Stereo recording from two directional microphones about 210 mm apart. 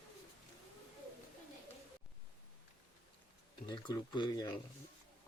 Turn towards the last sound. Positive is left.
turn(degrees=20)  # may be behind; listen again after turning